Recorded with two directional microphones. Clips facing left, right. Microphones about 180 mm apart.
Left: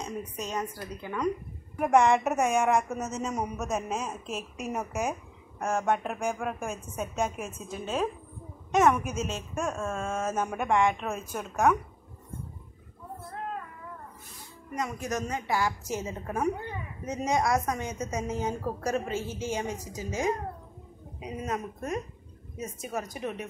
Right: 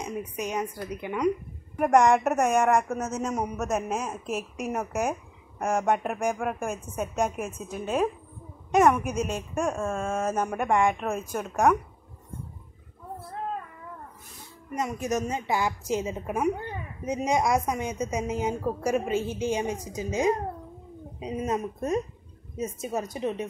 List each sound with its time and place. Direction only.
0.0 s a woman's voice: 15° right (ahead or behind)
1.8 s a woman's voice: 5° right (ahead or behind)
14.8 s a woman's voice: 20° right (ahead or behind)